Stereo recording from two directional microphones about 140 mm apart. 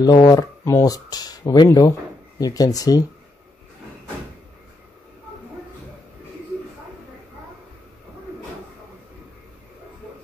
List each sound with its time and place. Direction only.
0.0 s speech: 30° left (ahead or behind)